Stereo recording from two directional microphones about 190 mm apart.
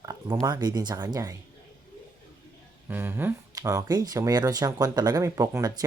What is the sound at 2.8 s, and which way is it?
Speech, 10° right (ahead or behind).